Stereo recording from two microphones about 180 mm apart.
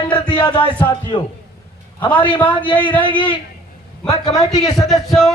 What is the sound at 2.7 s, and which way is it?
Speech, 10° left (ahead or behind).